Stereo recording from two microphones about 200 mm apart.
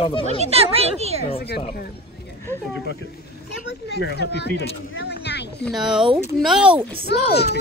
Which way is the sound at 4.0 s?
55° left (ahead or behind).